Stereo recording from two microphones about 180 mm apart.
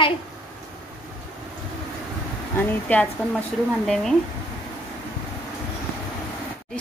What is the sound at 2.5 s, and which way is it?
Speech, 10° left (ahead or behind).